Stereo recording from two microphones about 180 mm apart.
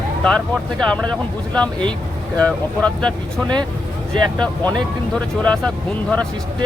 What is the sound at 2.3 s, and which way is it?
Speech, 5° left (ahead or behind).